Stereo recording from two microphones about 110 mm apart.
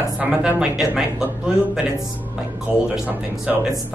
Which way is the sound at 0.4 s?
10° right (ahead or behind).